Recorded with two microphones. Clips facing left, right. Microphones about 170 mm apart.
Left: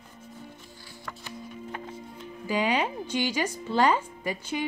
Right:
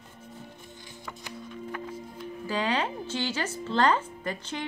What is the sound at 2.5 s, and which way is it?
A woman's voice, 10° left (ahead or behind).